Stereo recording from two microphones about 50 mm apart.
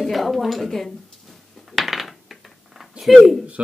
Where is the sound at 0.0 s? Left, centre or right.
Centre.